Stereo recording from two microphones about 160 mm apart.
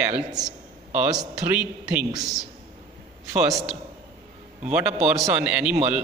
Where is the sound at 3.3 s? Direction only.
20° right (ahead or behind).